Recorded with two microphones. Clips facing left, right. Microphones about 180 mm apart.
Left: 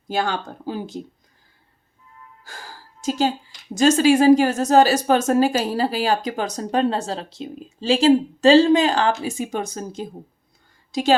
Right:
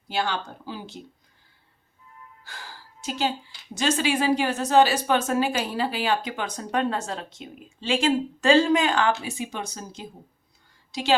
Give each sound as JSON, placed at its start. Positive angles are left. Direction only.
{"t": 0.1, "sound": "speech", "side_deg": 45}
{"t": 2.4, "sound": "music", "side_deg": 45}
{"t": 3.8, "sound": "a woman's voice", "side_deg": 45}